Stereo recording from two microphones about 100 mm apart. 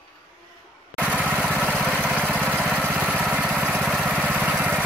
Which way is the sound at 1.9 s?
15° right (ahead or behind).